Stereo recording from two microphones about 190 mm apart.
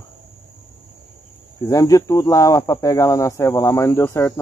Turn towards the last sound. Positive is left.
turn(degrees=15)  # may be behind; listen again after turning